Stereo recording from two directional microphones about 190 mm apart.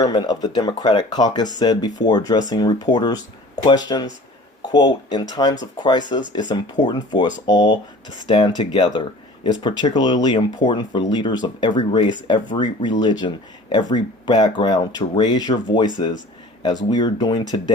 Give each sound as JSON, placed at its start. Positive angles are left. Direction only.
{"t": 0.0, "sound": "speech", "side_deg": 20}